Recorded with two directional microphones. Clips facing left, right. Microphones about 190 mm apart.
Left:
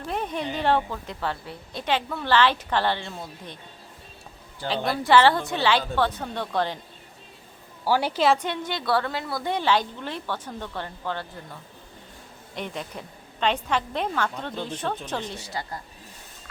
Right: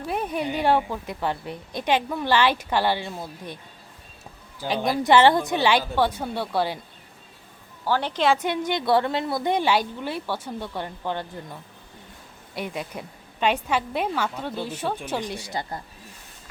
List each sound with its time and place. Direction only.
0.0 s a woman's voice: 10° right (ahead or behind)
4.6 s a woman's voice: 15° right (ahead or behind)
7.9 s a woman's voice: 10° left (ahead or behind)
8.4 s a woman's voice: 15° right (ahead or behind)
12.5 s a woman's voice: 10° right (ahead or behind)